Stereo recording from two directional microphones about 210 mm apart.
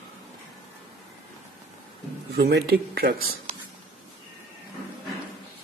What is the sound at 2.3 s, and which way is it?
Speech, 50° right (ahead or behind).